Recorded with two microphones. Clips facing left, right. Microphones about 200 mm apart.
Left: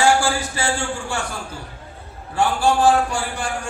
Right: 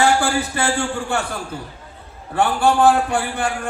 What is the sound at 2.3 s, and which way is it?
A man's voice, 60° right (ahead or behind).